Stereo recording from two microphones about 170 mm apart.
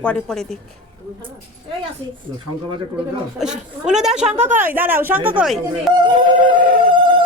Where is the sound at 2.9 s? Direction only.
5° right (ahead or behind).